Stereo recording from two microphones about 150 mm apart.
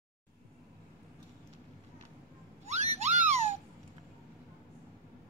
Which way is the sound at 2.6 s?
50° right (ahead or behind).